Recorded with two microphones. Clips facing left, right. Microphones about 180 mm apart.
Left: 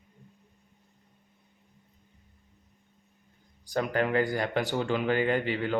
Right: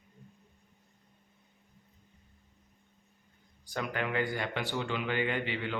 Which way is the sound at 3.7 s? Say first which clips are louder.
Left 7 dB; 40° left (ahead or behind).